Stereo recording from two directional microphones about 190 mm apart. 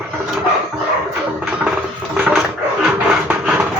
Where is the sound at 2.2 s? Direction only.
5° right (ahead or behind).